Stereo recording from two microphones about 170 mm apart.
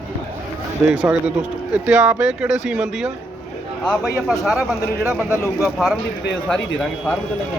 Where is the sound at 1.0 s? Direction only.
10° right (ahead or behind).